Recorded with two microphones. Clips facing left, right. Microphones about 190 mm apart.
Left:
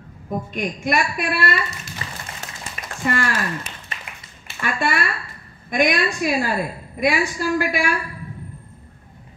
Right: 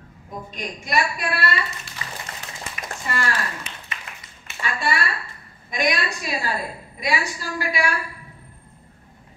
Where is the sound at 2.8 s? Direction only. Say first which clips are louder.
Right 3 dB; 35° left (ahead or behind).